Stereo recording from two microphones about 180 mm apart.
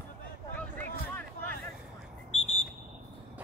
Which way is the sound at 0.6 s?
10° left (ahead or behind).